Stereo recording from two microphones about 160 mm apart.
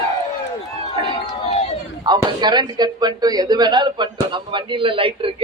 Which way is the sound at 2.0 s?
25° right (ahead or behind).